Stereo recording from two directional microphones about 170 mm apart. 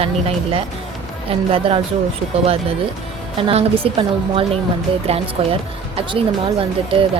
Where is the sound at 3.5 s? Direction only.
35° right (ahead or behind).